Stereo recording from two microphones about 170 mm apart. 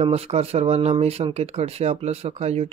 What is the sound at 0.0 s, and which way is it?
Speech, 40° right (ahead or behind).